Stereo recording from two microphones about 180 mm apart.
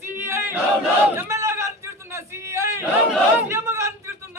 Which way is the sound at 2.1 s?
15° right (ahead or behind).